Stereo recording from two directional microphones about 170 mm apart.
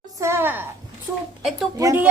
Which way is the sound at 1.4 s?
Centre (ahead or behind).